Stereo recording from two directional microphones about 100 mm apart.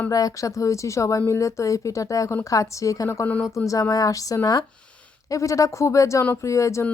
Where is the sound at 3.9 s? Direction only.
35° left (ahead or behind).